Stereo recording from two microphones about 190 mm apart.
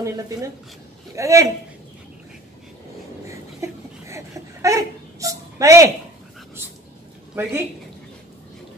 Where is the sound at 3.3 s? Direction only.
15° right (ahead or behind).